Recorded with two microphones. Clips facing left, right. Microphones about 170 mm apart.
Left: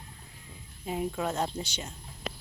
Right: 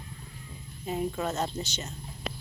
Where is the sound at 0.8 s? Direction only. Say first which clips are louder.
Right 1 dB; 10° left (ahead or behind).